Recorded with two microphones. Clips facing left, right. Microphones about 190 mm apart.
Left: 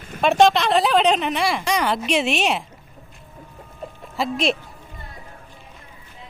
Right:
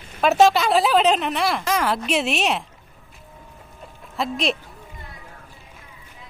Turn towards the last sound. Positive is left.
turn(degrees=0)  # may be behind; listen again after turning